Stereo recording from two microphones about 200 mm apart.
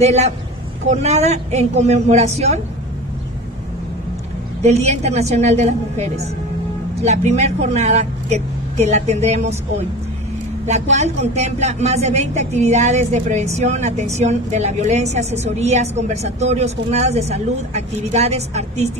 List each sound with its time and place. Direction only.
0.0 s speech: 35° right (ahead or behind)
4.6 s speech: 35° right (ahead or behind)
10.7 s speech: 35° right (ahead or behind)